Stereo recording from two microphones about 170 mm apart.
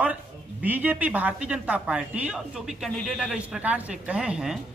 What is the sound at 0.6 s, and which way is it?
A woman's voice, 10° right (ahead or behind).